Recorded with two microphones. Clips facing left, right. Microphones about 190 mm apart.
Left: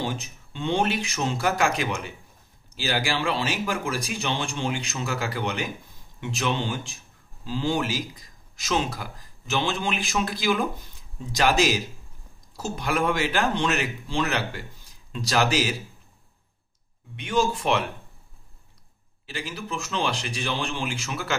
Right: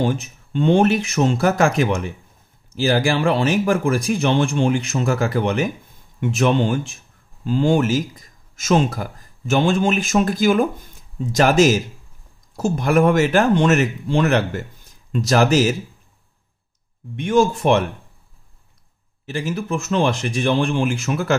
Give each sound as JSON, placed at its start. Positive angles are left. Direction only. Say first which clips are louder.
{"t": 0.0, "sound": "speech", "louder": "right 9 dB", "side_deg": -50}
{"t": 17.2, "sound": "speech", "louder": "right 8 dB", "side_deg": -50}
{"t": 19.2, "sound": "speech", "louder": "right 10 dB", "side_deg": -45}